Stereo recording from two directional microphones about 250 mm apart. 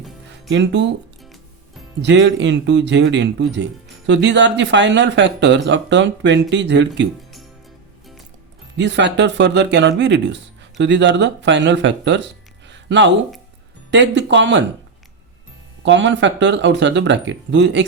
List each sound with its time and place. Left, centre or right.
0.5 s speech: right
1.2 s music: centre
2.0 s speech: right
8.8 s speech: right
15.8 s speech: right